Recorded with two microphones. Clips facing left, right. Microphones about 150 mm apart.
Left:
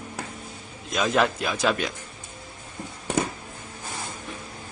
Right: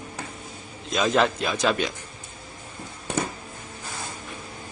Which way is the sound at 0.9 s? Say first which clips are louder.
Right 1 dB; centre (ahead or behind).